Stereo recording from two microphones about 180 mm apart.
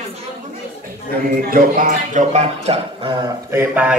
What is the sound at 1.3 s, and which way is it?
Speech, 50° right (ahead or behind).